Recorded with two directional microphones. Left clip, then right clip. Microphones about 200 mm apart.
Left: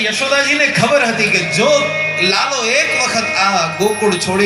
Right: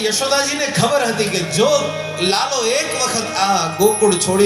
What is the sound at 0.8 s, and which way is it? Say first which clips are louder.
Speech: left 4 dB; 70° right (ahead or behind).